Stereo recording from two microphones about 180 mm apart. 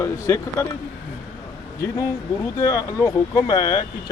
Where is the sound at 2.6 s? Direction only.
20° left (ahead or behind).